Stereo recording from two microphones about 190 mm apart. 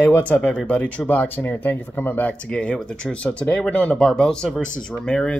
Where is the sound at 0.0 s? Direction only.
10° left (ahead or behind).